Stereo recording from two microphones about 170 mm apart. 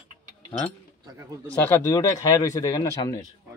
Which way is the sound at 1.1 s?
20° right (ahead or behind).